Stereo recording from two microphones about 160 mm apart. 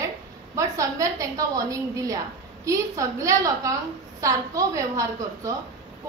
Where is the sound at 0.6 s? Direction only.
20° right (ahead or behind).